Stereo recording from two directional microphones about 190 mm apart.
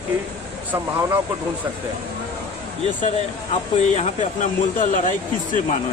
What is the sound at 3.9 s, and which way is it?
Speech, 40° left (ahead or behind).